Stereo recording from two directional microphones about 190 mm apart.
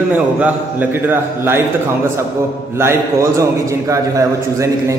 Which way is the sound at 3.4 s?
15° right (ahead or behind).